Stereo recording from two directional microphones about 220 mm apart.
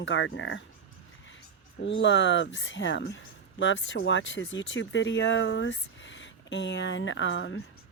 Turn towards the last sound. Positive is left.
turn(degrees=60)  # may be behind; listen again after turning